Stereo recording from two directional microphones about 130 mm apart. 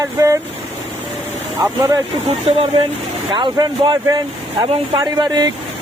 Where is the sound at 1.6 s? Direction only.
30° right (ahead or behind).